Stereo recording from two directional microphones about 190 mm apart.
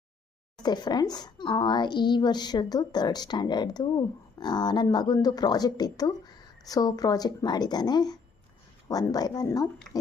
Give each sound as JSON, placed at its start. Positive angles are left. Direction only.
{"t": 0.6, "sound": "speech", "side_deg": 20}